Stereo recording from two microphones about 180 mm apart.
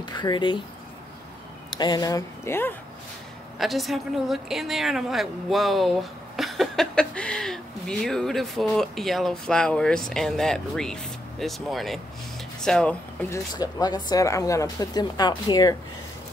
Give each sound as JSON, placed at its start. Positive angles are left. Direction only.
{"t": 0.0, "sound": "speech", "side_deg": 25}
{"t": 1.7, "sound": "speech", "side_deg": 25}
{"t": 3.5, "sound": "a woman's voice", "side_deg": 0}
{"t": 13.6, "sound": "speech", "side_deg": 20}